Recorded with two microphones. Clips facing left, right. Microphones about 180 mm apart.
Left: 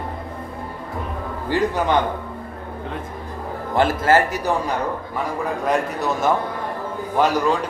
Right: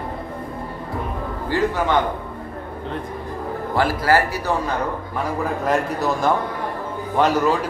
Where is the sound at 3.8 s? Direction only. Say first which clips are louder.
Left 2 dB; 20° left (ahead or behind).